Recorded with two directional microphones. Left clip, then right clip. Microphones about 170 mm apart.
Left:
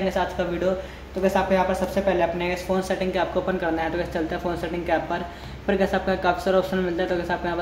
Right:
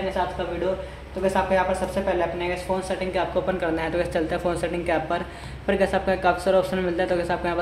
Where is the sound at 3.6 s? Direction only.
5° right (ahead or behind).